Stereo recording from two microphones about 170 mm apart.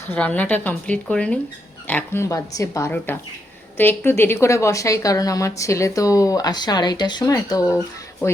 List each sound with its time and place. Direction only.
0.1 s a woman's voice: 10° left (ahead or behind)